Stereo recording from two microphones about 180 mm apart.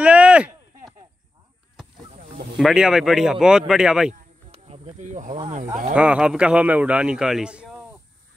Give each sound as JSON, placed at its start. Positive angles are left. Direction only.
{"t": 0.0, "sound": "a sound", "side_deg": -5}
{"t": 2.5, "sound": "a man's voice", "side_deg": 0}
{"t": 4.5, "sound": "speech", "side_deg": -40}
{"t": 5.9, "sound": "a man's voice", "side_deg": -5}